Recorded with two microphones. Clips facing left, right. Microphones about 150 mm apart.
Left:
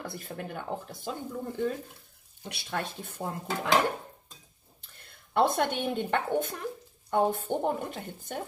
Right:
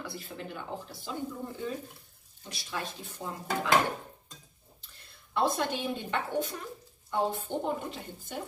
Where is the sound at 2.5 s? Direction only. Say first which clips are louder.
Left 3 dB; 60° left (ahead or behind).